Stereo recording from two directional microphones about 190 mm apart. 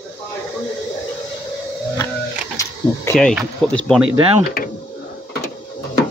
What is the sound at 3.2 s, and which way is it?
Speech, 5° left (ahead or behind).